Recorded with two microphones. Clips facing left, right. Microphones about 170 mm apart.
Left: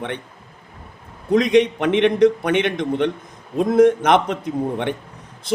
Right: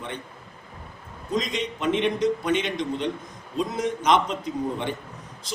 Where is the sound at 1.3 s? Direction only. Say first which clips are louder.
Left 12 dB; 65° left (ahead or behind).